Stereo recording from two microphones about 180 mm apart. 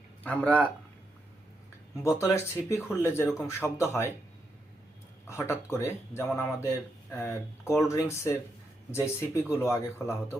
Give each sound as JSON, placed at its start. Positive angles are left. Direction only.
{"t": 0.2, "sound": "speech", "side_deg": 5}
{"t": 2.0, "sound": "speech", "side_deg": 15}
{"t": 5.3, "sound": "speech", "side_deg": 15}